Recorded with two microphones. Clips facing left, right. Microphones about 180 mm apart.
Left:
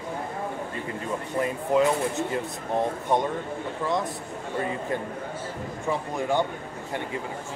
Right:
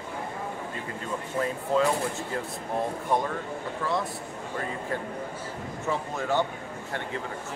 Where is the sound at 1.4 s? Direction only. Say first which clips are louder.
Left 2 dB; 20° left (ahead or behind).